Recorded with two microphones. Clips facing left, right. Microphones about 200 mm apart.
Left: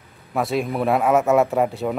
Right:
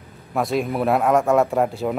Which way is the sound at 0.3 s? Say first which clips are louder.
Right 1 dB; centre (ahead or behind).